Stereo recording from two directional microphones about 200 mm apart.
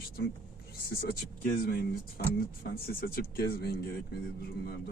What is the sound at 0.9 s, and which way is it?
Speech, 50° left (ahead or behind).